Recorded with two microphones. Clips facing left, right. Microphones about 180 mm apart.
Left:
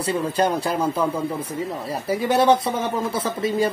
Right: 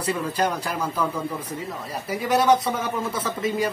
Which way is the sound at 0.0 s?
30° left (ahead or behind).